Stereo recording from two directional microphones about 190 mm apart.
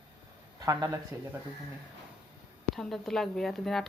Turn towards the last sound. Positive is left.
turn(degrees=0)  # may be behind; listen again after turning